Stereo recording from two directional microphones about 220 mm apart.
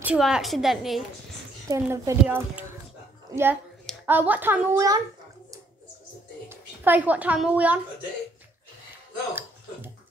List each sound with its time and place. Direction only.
0.0 s a woman's voice: 5° right (ahead or behind)
1.7 s a woman's voice: 10° right (ahead or behind)
6.5 s a woman's voice: 10° right (ahead or behind)